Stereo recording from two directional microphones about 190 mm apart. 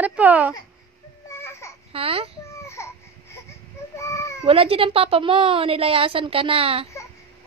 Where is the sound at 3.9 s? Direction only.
15° left (ahead or behind).